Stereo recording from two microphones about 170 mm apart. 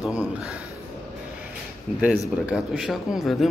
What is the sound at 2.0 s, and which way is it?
Speech, 5° right (ahead or behind).